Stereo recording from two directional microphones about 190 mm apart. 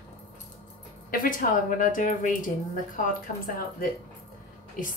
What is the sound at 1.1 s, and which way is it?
A woman's voice, 45° left (ahead or behind).